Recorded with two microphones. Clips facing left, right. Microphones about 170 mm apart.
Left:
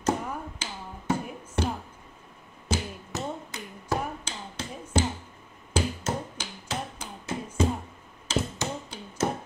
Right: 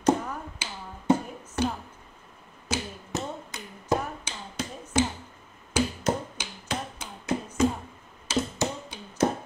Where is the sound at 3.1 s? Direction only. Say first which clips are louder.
Even; 20° right (ahead or behind).